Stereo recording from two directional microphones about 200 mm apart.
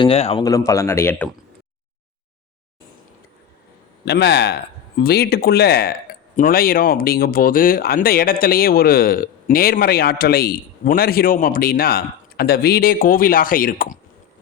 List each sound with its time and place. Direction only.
0.0 s speech: 30° left (ahead or behind)
0.4 s a man's voice: 15° left (ahead or behind)
4.0 s speech: 55° left (ahead or behind)